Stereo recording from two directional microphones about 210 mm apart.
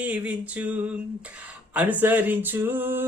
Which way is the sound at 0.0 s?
5° right (ahead or behind).